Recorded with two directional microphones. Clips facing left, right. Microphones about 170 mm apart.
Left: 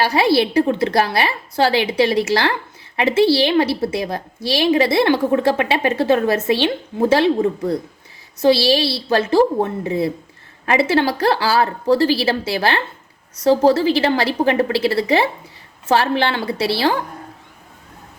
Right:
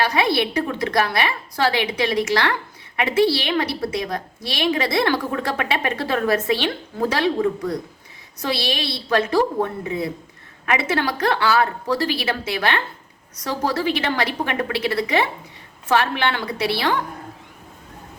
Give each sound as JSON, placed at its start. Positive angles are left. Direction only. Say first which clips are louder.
{"t": 0.0, "sound": "a woman's voice", "louder": "left 4 dB", "side_deg": 30}